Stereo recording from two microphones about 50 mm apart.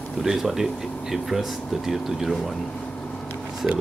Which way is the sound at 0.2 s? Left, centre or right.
Centre.